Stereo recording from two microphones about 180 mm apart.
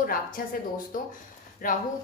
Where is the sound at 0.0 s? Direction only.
50° left (ahead or behind).